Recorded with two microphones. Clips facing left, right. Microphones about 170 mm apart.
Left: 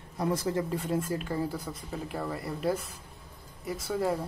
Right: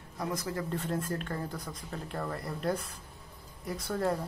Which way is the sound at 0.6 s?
5° left (ahead or behind).